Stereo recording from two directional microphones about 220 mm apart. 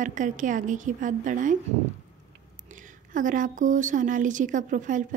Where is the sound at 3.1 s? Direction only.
35° right (ahead or behind).